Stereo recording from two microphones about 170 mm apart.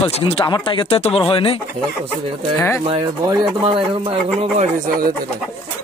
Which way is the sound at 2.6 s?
15° left (ahead or behind).